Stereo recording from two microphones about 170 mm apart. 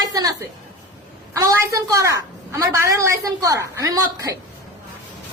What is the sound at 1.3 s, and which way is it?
A woman's voice, 20° right (ahead or behind).